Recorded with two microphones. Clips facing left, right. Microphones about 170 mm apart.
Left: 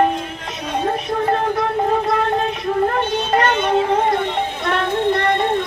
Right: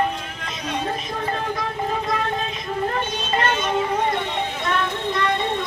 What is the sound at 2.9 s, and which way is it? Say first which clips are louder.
Child singing: left 6 dB; 65° left (ahead or behind).